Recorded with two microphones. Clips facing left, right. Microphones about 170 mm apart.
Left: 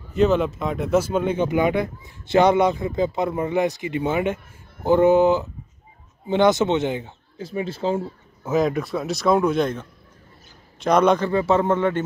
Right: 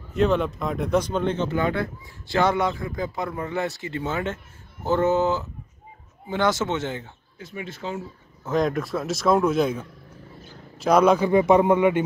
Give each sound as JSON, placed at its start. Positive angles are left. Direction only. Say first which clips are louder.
{"t": 0.1, "sound": "speech", "louder": "left 3 dB", "side_deg": 0}
{"t": 7.3, "sound": "speech", "louder": "left 8 dB", "side_deg": 30}
{"t": 8.5, "sound": "a man's voice", "louder": "left 2 dB", "side_deg": 0}